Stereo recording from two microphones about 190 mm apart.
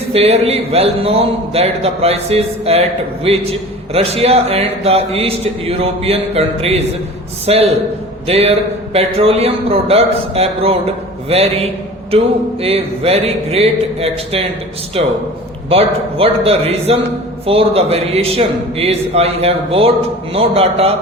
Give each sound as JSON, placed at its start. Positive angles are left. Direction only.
{"t": 0.1, "sound": "a man's voice", "side_deg": -30}